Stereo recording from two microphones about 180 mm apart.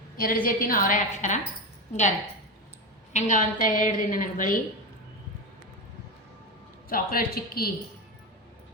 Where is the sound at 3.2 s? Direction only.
45° left (ahead or behind).